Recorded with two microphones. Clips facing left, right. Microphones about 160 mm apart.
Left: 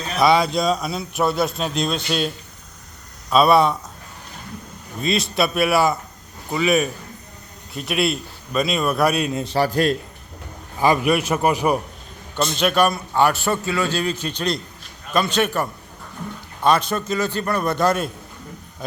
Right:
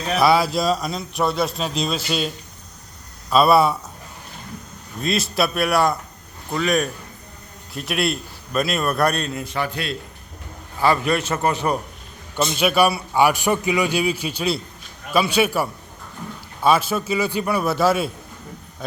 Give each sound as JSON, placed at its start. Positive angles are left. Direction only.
{"t": 0.2, "sound": "a man's voice", "side_deg": -5}
{"t": 4.9, "sound": "a man's voice", "side_deg": 0}
{"t": 9.3, "sound": "a man's voice", "side_deg": 30}
{"t": 10.8, "sound": "a man's voice", "side_deg": 15}
{"t": 12.4, "sound": "a man's voice", "side_deg": -5}